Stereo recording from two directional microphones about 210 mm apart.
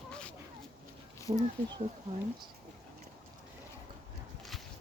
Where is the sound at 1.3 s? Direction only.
30° right (ahead or behind).